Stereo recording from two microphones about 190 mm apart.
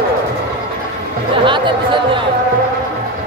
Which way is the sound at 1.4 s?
25° right (ahead or behind).